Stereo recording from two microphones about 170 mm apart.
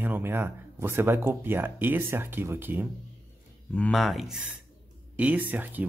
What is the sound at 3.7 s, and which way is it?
Speech, 5° left (ahead or behind).